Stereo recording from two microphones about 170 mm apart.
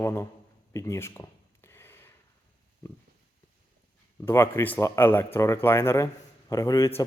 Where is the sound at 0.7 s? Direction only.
15° left (ahead or behind).